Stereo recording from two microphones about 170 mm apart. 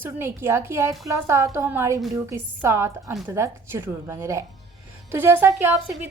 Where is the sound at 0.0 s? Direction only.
15° right (ahead or behind).